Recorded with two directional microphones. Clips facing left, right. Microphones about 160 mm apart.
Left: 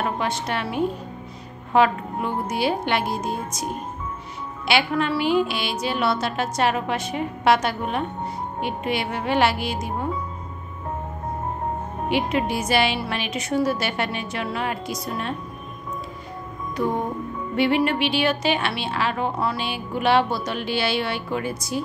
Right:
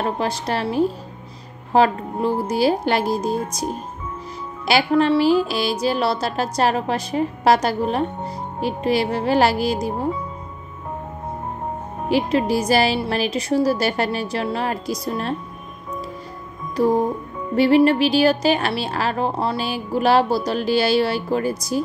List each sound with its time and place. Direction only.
0.0 s a woman's voice: 35° right (ahead or behind)
4.6 s a woman's voice: 35° right (ahead or behind)
12.1 s a woman's voice: 35° right (ahead or behind)
16.7 s music: 35° right (ahead or behind)
17.6 s a woman's voice: 35° right (ahead or behind)